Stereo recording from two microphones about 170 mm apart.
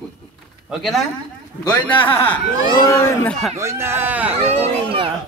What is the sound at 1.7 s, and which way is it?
A man's voice, 10° left (ahead or behind).